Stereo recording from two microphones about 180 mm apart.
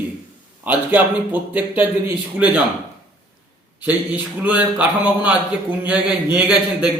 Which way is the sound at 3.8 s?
10° right (ahead or behind).